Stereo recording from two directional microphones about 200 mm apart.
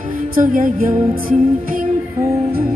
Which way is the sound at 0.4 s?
40° right (ahead or behind).